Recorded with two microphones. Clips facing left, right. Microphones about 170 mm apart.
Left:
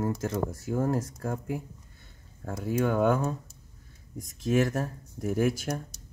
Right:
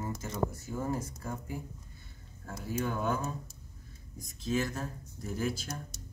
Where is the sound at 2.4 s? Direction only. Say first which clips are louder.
Left 7 dB; 65° left (ahead or behind).